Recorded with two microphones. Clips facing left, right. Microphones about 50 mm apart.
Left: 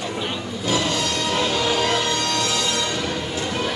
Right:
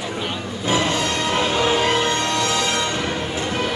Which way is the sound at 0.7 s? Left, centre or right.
Right.